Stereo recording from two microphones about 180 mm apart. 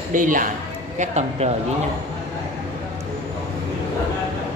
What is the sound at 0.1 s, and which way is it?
A man's voice, 45° right (ahead or behind).